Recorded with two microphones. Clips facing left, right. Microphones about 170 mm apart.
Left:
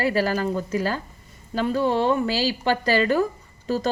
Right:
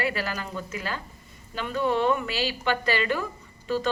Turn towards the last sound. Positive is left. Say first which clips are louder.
# left 3 dB
turn(degrees=40)  # may be behind; listen again after turning